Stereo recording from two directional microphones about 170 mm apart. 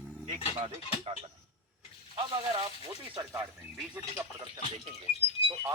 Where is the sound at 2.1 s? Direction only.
25° right (ahead or behind).